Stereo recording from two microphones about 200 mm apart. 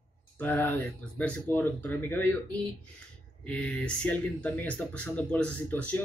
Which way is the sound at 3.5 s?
5° left (ahead or behind).